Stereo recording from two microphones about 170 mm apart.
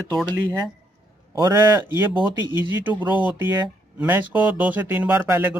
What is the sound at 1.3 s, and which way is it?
Speech, 20° right (ahead or behind).